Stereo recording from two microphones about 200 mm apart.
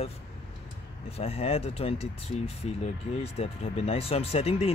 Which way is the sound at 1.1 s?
30° left (ahead or behind).